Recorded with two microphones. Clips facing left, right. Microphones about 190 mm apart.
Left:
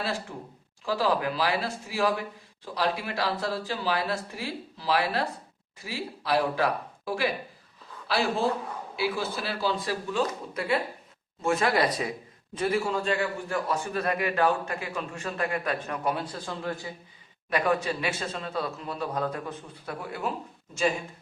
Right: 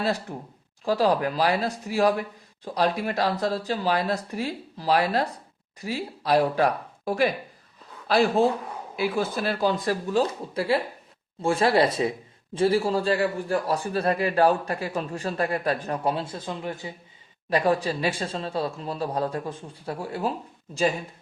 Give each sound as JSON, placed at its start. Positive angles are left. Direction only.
{"t": 0.0, "sound": "a man's voice", "side_deg": -40}
{"t": 17.5, "sound": "a man's voice", "side_deg": -30}